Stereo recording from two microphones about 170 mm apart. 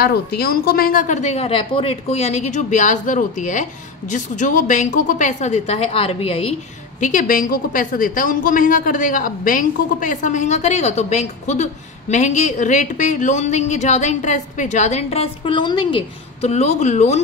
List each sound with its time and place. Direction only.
0.0 s a woman's voice: 65° left (ahead or behind); by 6.5 s 35° left (ahead or behind)
7.0 s a woman's voice: 50° left (ahead or behind)